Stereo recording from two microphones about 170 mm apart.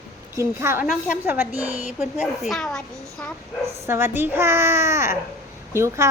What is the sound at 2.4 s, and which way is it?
Speech, centre (ahead or behind).